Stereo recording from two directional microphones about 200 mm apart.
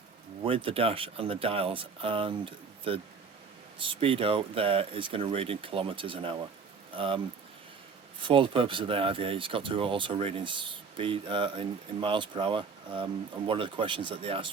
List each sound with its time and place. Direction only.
0.4 s speech: 30° right (ahead or behind)
8.2 s speech: 25° right (ahead or behind)